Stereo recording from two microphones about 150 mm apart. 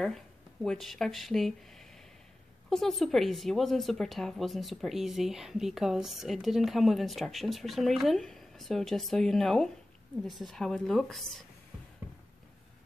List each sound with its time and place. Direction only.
0.0 s a woman's voice: centre (ahead or behind)